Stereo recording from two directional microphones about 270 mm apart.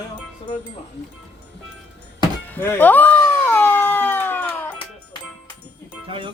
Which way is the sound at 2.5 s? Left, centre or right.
Centre.